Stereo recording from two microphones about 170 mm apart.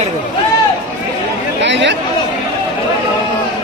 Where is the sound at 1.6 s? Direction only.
90° right.